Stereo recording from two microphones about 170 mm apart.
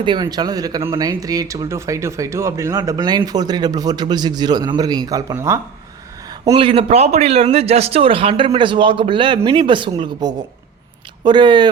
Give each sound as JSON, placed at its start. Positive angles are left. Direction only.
{"t": 0.0, "sound": "speech", "side_deg": -25}
{"t": 6.4, "sound": "a man's voice", "side_deg": -25}